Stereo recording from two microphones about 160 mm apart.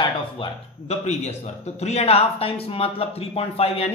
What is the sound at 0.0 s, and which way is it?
Speech, 30° left (ahead or behind).